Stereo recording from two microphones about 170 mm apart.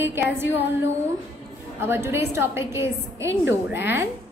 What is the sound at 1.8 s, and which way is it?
A woman's voice, 15° right (ahead or behind).